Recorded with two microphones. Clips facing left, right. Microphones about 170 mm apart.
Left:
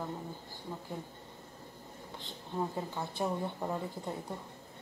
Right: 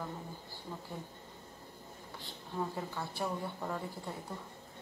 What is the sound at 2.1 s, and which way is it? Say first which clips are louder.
Speech: left 2 dB; 20° left (ahead or behind).